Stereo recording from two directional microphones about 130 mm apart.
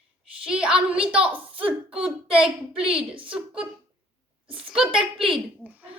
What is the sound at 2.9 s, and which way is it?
Speech, 40° right (ahead or behind).